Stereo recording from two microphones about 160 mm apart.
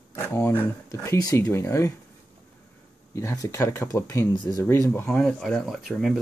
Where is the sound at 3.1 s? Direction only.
20° left (ahead or behind).